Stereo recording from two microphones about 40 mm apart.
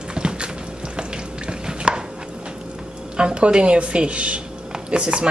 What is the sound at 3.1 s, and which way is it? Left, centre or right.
A woman's voice, right.